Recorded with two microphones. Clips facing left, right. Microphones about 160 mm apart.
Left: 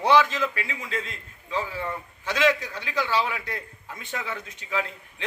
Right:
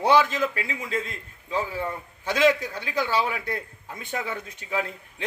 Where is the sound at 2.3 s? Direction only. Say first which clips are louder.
Right 2 dB; 50° right (ahead or behind).